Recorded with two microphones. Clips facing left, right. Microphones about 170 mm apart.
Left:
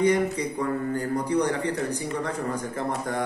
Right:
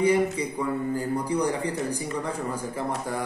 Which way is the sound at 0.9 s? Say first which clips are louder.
Left 1 dB; 10° right (ahead or behind).